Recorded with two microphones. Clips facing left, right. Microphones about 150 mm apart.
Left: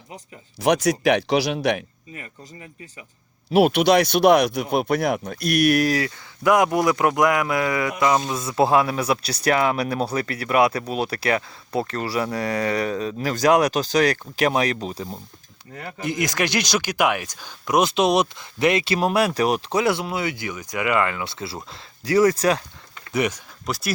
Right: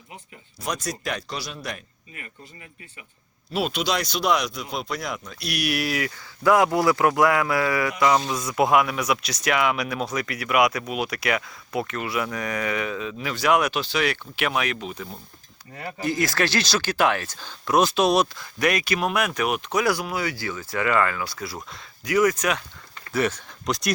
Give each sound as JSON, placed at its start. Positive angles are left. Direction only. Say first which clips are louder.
{"t": 0.6, "sound": "speech", "louder": "left 11 dB", "side_deg": 70}
{"t": 2.1, "sound": "speech", "louder": "left 4 dB", "side_deg": 30}
{"t": 3.5, "sound": "speech", "louder": "left 9 dB", "side_deg": 60}
{"t": 6.4, "sound": "speech", "louder": "left 1 dB", "side_deg": 20}
{"t": 15.7, "sound": "speech", "louder": "even", "side_deg": -15}
{"t": 16.0, "sound": "speech", "louder": "even", "side_deg": 20}
{"t": 23.1, "sound": "speech", "louder": "left 1 dB", "side_deg": 15}
{"t": 23.6, "sound": "speech", "louder": "right 2 dB", "side_deg": 5}